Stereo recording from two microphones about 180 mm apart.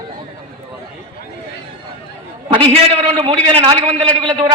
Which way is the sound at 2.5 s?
30° right (ahead or behind).